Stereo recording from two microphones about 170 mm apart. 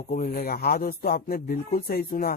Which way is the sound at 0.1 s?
50° left (ahead or behind).